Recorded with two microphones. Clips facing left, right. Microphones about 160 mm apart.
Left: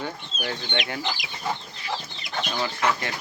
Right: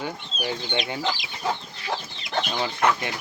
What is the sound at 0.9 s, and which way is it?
Speech, 25° right (ahead or behind).